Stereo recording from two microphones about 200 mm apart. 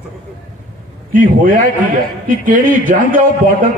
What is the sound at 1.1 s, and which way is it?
A man's voice, 45° right (ahead or behind).